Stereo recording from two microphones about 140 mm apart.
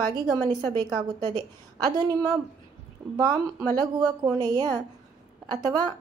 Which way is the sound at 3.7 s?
30° right (ahead or behind).